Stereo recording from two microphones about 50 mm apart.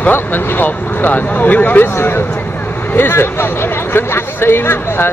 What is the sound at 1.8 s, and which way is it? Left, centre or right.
Speech, left.